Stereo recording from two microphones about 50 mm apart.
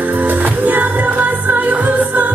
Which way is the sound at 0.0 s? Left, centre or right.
Right.